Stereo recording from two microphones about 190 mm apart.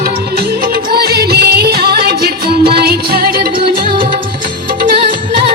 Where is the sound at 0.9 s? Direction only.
55° right (ahead or behind).